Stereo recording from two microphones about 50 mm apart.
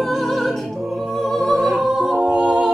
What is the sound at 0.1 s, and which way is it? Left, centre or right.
Music, centre.